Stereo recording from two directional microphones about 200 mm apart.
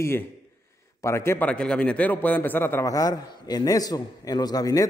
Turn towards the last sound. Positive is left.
turn(degrees=15)  # may be behind; listen again after turning